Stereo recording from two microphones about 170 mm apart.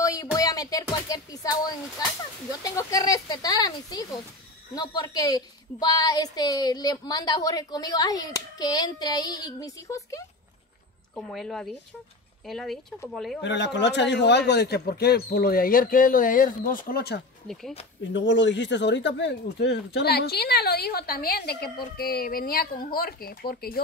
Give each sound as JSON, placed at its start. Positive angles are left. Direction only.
{"t": 0.0, "sound": "music", "side_deg": 20}
{"t": 2.6, "sound": "a woman's voice", "side_deg": 20}
{"t": 11.1, "sound": "speech", "side_deg": 5}
{"t": 13.4, "sound": "speech", "side_deg": 90}
{"t": 17.5, "sound": "speech", "side_deg": 0}
{"t": 18.1, "sound": "speech", "side_deg": 90}